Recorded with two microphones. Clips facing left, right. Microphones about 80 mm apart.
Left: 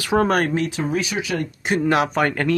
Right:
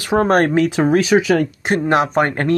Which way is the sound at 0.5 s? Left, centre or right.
Right.